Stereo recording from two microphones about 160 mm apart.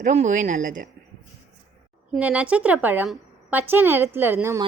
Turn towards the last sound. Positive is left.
turn(degrees=-15)  # may be behind; listen again after turning